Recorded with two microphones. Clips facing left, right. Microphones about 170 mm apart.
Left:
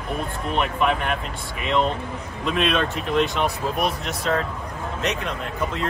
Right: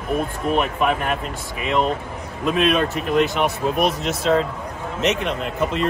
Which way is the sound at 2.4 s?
5° right (ahead or behind).